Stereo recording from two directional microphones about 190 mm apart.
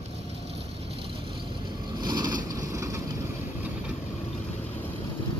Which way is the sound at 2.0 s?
20° right (ahead or behind).